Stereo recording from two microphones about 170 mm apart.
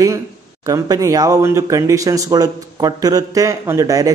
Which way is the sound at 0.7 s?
20° right (ahead or behind).